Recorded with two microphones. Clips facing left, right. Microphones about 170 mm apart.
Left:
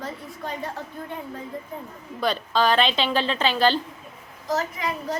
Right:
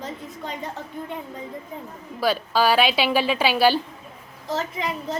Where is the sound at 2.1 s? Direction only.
5° right (ahead or behind).